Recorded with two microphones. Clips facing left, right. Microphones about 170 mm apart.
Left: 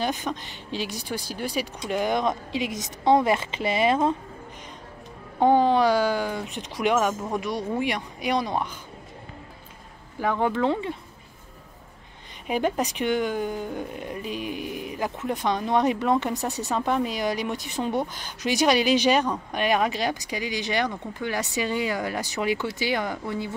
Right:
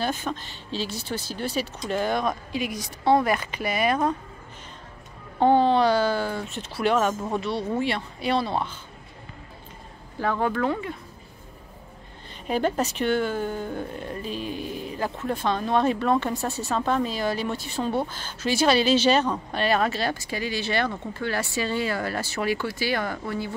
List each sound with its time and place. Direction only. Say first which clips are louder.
0.0 s speech: even; 15° left (ahead or behind)
5.4 s speech: even; 10° left (ahead or behind)
10.2 s speech: left 1 dB; 15° left (ahead or behind)
12.4 s speech: right 1 dB; 15° left (ahead or behind)